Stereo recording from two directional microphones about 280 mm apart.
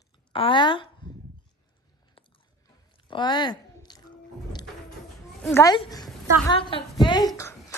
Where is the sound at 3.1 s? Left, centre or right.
Centre.